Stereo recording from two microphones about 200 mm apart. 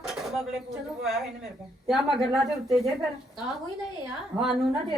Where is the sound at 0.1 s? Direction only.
Centre (ahead or behind).